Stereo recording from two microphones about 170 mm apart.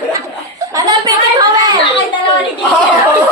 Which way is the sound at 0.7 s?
20° right (ahead or behind).